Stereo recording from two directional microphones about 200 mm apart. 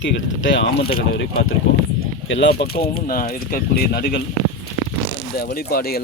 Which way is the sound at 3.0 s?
45° left (ahead or behind).